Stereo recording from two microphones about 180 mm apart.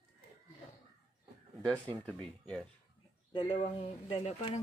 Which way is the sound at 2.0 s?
5° left (ahead or behind).